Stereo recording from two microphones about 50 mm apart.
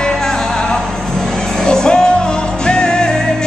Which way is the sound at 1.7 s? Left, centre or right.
Centre.